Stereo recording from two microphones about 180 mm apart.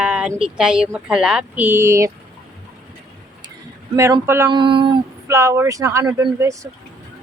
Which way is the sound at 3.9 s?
15° right (ahead or behind).